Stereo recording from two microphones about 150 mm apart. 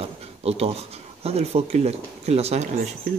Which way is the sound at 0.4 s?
40° right (ahead or behind).